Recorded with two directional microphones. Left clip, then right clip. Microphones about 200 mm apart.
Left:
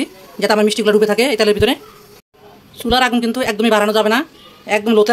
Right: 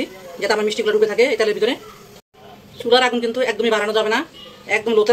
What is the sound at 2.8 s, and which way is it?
Speech, 60° left (ahead or behind).